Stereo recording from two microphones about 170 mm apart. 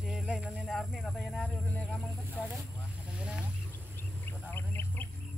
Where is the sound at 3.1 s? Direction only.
5° right (ahead or behind).